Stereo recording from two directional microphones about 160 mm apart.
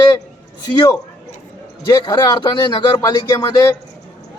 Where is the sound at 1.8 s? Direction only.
30° left (ahead or behind).